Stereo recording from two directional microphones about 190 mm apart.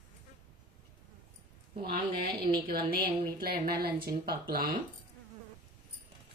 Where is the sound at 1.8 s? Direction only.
55° right (ahead or behind).